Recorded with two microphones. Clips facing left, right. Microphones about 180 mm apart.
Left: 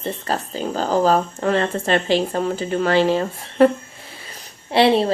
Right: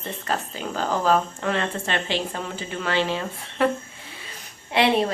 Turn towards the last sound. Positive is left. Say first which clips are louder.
# left 5 dB
turn(degrees=30)  # may be behind; listen again after turning